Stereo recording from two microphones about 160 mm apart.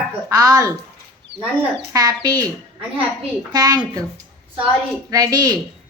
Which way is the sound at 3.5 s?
20° right (ahead or behind).